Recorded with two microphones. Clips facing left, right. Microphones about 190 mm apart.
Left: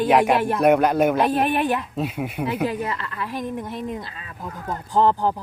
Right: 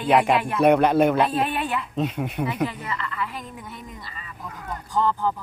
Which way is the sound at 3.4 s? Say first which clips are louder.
Left 10 dB; 70° left (ahead or behind).